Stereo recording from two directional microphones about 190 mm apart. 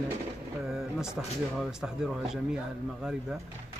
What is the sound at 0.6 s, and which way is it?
Speech, 5° right (ahead or behind).